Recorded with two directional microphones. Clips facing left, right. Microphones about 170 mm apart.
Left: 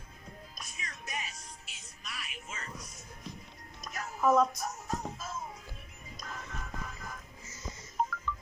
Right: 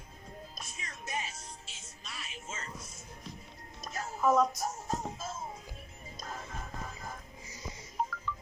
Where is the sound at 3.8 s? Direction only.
25° right (ahead or behind).